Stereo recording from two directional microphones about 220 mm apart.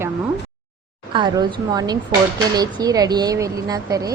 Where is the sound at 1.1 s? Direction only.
20° right (ahead or behind).